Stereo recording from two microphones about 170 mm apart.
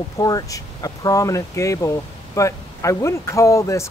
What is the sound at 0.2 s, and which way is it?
Speech, 20° left (ahead or behind).